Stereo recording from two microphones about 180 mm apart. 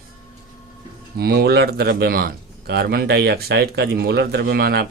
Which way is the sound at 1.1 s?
60° right (ahead or behind).